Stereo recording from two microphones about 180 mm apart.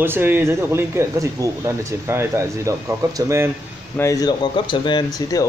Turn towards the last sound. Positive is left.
turn(degrees=20)  # may be behind; listen again after turning